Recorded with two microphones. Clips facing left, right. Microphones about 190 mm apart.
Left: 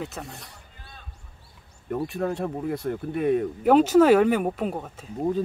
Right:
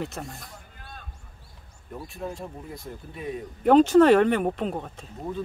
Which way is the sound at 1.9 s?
70° left (ahead or behind).